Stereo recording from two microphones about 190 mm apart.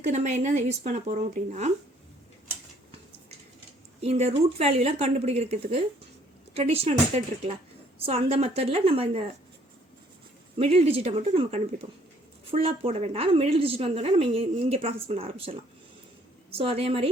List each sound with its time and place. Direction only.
0.0 s speech: 40° right (ahead or behind)
4.0 s speech: 35° right (ahead or behind)
10.6 s a woman's voice: 30° right (ahead or behind)